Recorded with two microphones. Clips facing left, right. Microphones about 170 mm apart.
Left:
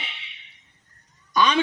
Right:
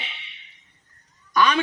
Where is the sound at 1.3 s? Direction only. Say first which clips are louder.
Even; 20° left (ahead or behind).